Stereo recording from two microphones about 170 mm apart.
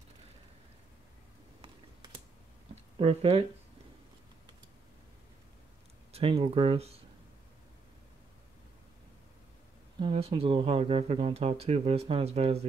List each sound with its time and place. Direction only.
2.7 s a sound: 35° right (ahead or behind)
6.1 s speech: 35° right (ahead or behind)
9.9 s speech: 35° right (ahead or behind)